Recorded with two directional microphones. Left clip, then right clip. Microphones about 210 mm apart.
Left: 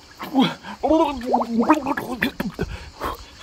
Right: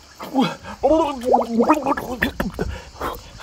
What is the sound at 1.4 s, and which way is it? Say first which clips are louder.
Gargling: right 2 dB; 5° right (ahead or behind).